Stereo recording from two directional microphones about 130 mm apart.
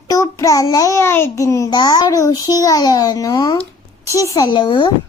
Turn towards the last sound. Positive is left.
turn(degrees=40)  # may be behind; listen again after turning